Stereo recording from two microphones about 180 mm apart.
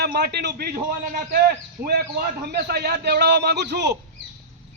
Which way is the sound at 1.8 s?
60° right (ahead or behind).